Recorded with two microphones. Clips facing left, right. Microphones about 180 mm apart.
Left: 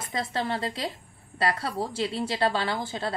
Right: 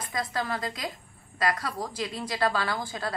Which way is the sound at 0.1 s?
30° left (ahead or behind).